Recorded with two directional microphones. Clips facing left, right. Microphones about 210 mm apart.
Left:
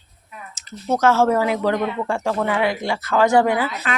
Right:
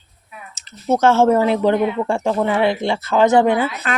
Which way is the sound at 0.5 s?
25° right (ahead or behind).